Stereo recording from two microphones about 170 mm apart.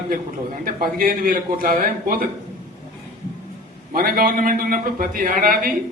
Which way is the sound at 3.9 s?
55° right (ahead or behind).